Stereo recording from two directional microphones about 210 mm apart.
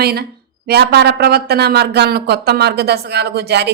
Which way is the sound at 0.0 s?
50° right (ahead or behind).